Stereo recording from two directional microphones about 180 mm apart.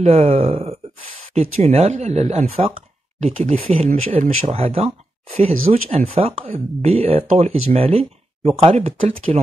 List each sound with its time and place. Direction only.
0.0 s speech: 35° right (ahead or behind)